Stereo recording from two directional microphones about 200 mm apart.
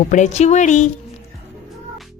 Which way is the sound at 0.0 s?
35° left (ahead or behind).